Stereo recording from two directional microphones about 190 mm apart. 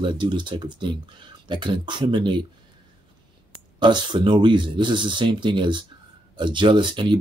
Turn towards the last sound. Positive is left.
turn(degrees=-25)  # may be behind; listen again after turning